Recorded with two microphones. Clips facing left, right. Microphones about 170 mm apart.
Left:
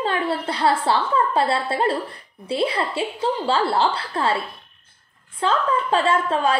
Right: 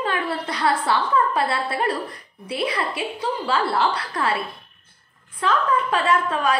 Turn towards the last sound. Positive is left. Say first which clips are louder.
# left 1 dB
turn(degrees=30)  # may be behind; listen again after turning